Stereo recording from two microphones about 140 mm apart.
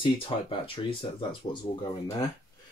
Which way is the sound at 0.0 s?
40° left (ahead or behind).